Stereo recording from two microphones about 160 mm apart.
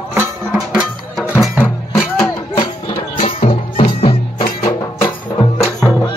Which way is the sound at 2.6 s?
35° left (ahead or behind).